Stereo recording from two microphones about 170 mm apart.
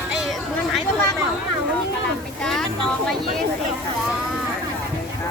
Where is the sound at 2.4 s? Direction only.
5° left (ahead or behind).